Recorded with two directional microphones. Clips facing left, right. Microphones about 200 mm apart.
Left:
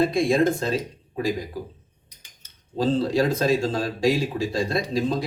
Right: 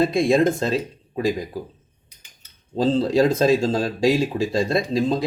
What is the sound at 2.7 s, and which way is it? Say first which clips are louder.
Speech: right 3 dB; 25° right (ahead or behind).